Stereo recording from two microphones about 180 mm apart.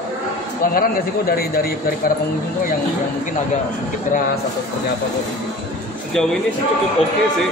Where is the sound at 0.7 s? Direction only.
55° left (ahead or behind).